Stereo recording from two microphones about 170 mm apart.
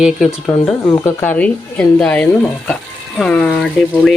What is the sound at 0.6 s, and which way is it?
Speech, 25° left (ahead or behind).